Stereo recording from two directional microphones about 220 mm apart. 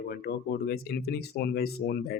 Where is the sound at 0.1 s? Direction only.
45° left (ahead or behind).